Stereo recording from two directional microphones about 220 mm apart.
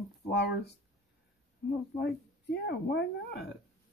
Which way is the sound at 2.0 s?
45° left (ahead or behind).